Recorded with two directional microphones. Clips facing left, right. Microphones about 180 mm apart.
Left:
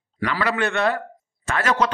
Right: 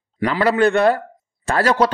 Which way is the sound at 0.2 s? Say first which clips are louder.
Right 7 dB; 35° right (ahead or behind).